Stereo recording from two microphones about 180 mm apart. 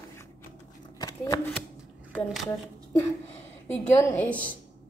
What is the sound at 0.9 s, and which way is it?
Shuffling cards, 20° left (ahead or behind).